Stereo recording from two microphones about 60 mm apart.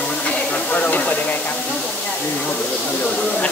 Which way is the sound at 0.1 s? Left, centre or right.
Centre.